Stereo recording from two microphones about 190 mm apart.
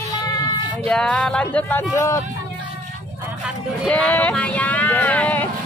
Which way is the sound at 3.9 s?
10° left (ahead or behind).